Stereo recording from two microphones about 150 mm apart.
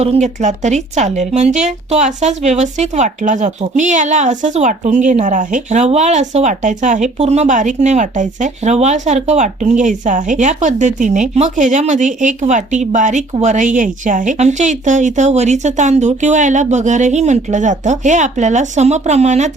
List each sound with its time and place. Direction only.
0.0 s speech: 45° right (ahead or behind)